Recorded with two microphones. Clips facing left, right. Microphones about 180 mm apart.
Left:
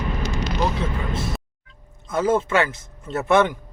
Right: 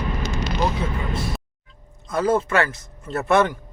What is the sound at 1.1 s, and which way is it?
Speech, 25° left (ahead or behind).